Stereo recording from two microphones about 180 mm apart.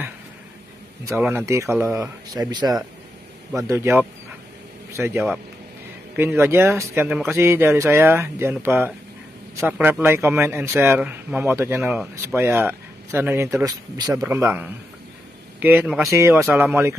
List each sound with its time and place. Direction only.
1.0 s speech: 10° right (ahead or behind)
3.6 s speech: 15° right (ahead or behind)